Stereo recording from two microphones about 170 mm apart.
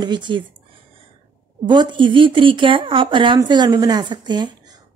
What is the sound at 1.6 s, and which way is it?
A woman's voice, 25° right (ahead or behind).